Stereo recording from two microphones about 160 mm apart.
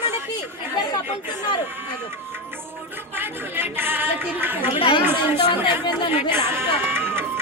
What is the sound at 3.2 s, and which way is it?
Speech, 15° right (ahead or behind).